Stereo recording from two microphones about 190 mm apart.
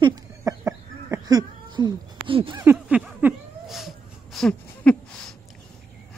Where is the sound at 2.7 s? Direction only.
5° right (ahead or behind).